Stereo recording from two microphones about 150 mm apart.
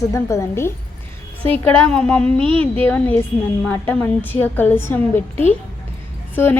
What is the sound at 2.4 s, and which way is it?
Speech, 35° right (ahead or behind).